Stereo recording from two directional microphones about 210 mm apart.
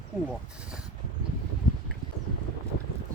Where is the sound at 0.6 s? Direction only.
5° right (ahead or behind).